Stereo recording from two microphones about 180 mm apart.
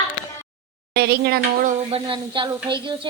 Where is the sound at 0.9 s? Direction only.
65° right (ahead or behind).